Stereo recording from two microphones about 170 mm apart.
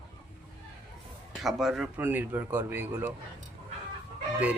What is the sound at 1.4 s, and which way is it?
Speech, centre (ahead or behind).